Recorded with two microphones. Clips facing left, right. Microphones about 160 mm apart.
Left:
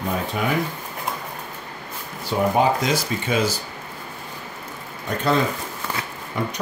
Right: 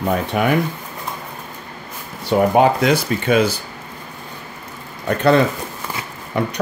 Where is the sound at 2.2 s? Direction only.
60° right (ahead or behind).